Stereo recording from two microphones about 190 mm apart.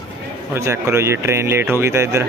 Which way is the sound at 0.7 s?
15° right (ahead or behind).